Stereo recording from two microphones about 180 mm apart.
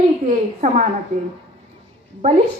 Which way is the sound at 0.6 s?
40° right (ahead or behind).